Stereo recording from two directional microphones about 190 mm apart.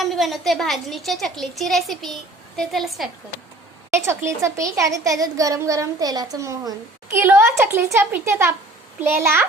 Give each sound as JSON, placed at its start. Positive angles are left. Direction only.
{"t": 0.0, "sound": "a woman's voice", "side_deg": 0}
{"t": 3.9, "sound": "a child's voice", "side_deg": -15}